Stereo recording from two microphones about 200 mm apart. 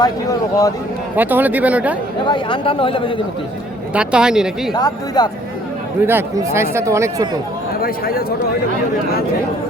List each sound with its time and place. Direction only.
0.0 s speech: 15° left (ahead or behind)
1.1 s speech: 10° right (ahead or behind)
2.2 s speech: 25° left (ahead or behind)
3.9 s speech: 5° right (ahead or behind)
4.7 s speech: 20° left (ahead or behind)
6.1 s speech: 10° right (ahead or behind)
7.8 s speech: 50° left (ahead or behind)